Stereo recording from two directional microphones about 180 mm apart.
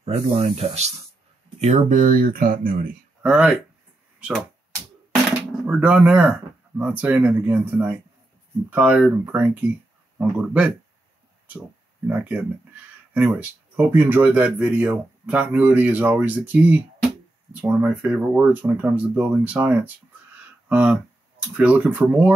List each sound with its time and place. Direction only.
0.0 s speech: 35° right (ahead or behind); by 3.0 s 50° right (ahead or behind)
3.2 s speech: 5° right (ahead or behind)
5.8 s speech: 5° right (ahead or behind)
12.1 s speech: 10° right (ahead or behind)